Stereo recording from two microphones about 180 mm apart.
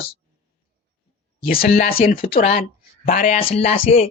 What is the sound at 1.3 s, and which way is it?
Speech, 55° left (ahead or behind).